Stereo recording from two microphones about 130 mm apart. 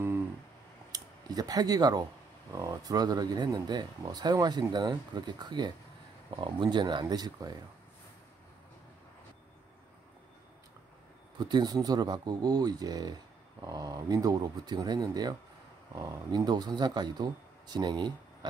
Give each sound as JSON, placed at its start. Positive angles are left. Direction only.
{"t": 0.9, "sound": "speech", "side_deg": -30}
{"t": 11.3, "sound": "speech", "side_deg": -35}